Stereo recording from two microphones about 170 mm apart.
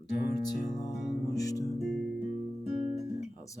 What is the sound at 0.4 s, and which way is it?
Music, 25° left (ahead or behind).